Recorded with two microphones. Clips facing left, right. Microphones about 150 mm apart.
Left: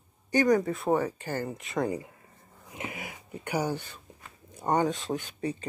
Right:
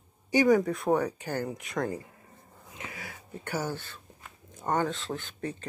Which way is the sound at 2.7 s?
20° left (ahead or behind).